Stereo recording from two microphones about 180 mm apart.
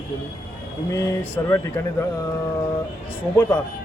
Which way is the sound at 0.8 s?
15° left (ahead or behind).